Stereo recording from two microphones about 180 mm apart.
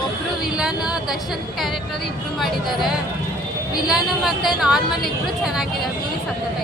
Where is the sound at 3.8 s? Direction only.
Centre (ahead or behind).